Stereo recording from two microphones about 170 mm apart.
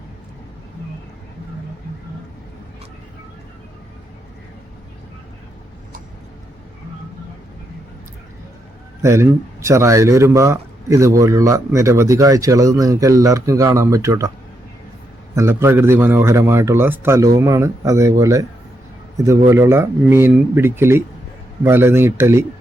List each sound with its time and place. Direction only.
9.0 s a man's voice: 15° right (ahead or behind)
15.4 s a man's voice: 15° right (ahead or behind)